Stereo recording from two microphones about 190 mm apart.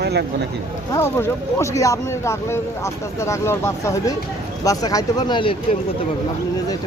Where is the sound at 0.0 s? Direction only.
60° right (ahead or behind).